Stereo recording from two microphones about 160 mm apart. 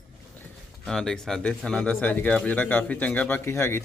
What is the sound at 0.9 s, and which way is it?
Speech, 5° left (ahead or behind).